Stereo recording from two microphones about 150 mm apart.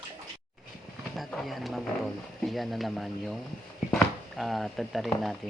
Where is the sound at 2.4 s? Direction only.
Centre (ahead or behind).